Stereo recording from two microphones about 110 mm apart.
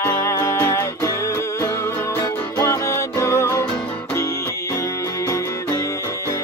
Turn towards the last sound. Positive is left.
turn(degrees=35)  # may be behind; listen again after turning